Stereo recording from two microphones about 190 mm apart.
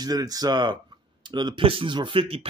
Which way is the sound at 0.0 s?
20° right (ahead or behind).